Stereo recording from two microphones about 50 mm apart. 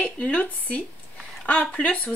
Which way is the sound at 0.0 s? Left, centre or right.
Left.